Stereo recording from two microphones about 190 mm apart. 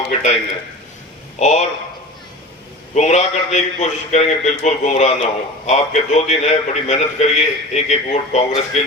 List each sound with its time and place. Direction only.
0.1 s a man's voice: 35° left (ahead or behind)
1.4 s a man's voice: 35° left (ahead or behind)
2.9 s a man's voice: 35° left (ahead or behind)